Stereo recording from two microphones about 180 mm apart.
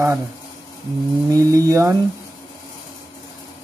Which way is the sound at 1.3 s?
20° right (ahead or behind).